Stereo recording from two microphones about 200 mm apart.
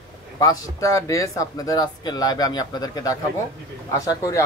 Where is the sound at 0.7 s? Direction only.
15° left (ahead or behind).